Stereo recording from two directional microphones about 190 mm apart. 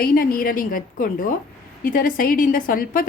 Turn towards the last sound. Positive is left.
turn(degrees=45)  # may be behind; listen again after turning